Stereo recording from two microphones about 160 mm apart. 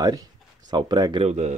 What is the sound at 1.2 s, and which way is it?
Speech, 45° right (ahead or behind).